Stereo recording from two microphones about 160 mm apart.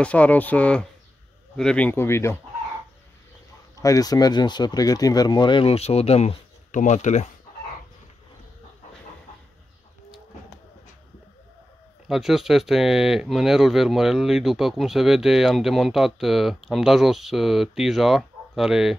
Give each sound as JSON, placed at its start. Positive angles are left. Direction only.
{"t": 0.0, "sound": "speech", "side_deg": 10}
{"t": 3.8, "sound": "speech", "side_deg": 20}
{"t": 12.1, "sound": "speech", "side_deg": 0}